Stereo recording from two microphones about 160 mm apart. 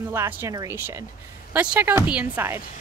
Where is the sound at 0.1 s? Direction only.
15° right (ahead or behind).